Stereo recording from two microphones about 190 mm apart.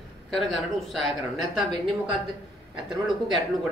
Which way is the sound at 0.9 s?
Centre (ahead or behind).